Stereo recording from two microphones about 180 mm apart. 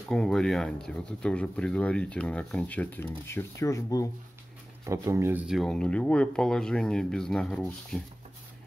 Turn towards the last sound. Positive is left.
turn(degrees=5)  # may be behind; listen again after turning